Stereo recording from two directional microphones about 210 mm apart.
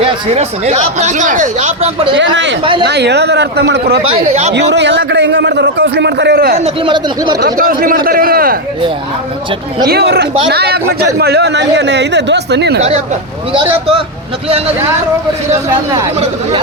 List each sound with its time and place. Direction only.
0.0 s speech: 30° right (ahead or behind)
2.1 s a man's voice: 60° right (ahead or behind)
4.1 s speech: 30° right (ahead or behind)
4.7 s a man's voice: 55° right (ahead or behind)
6.6 s speech: 20° right (ahead or behind)
7.4 s speech: 40° right (ahead or behind)
9.9 s a man's voice: 50° right (ahead or behind)
13.5 s speech: 25° right (ahead or behind)